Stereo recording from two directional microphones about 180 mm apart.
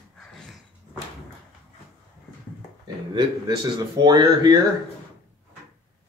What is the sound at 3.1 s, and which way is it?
Speech, 25° right (ahead or behind).